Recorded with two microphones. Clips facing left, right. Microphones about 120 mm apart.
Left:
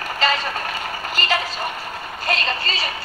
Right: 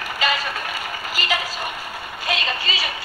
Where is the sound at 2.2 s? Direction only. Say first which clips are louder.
Left 2 dB; 5° right (ahead or behind).